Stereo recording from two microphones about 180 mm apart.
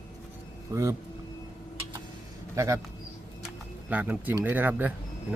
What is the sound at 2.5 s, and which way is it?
Speech, 15° right (ahead or behind).